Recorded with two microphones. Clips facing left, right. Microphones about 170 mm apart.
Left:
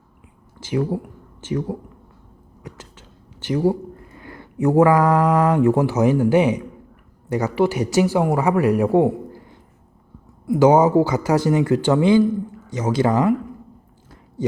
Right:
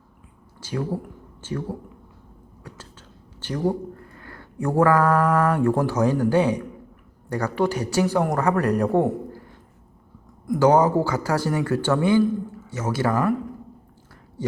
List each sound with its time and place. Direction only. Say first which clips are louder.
0.7 s speech: left 5 dB; 15° left (ahead or behind)
3.4 s speech: left 5 dB; 10° left (ahead or behind)
10.4 s speech: left 3 dB; 10° left (ahead or behind)